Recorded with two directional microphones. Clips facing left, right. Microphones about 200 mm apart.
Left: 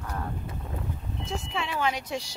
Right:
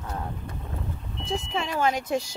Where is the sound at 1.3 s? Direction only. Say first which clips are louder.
Right 4 dB; 40° right (ahead or behind).